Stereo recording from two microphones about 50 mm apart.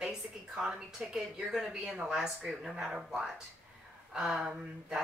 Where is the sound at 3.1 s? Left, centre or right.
Centre.